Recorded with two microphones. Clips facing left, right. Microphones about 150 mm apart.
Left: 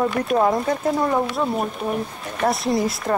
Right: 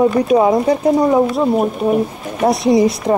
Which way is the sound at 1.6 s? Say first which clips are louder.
Right 9 dB; 45° right (ahead or behind).